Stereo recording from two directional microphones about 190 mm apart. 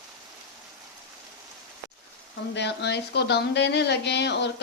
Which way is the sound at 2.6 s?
60° left (ahead or behind).